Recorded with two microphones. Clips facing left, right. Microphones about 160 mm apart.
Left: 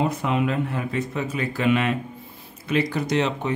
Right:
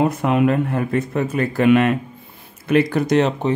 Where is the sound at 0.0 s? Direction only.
55° right (ahead or behind).